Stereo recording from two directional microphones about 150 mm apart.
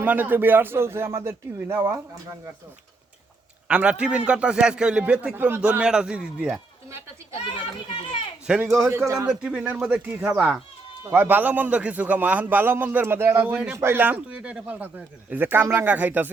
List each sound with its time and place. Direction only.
0.0 s a man's voice: 10° right (ahead or behind)
3.7 s a man's voice: 10° right (ahead or behind)
8.4 s a man's voice: 5° right (ahead or behind)
8.9 s speech: 20° right (ahead or behind)
9.3 s a man's voice: 5° right (ahead or behind)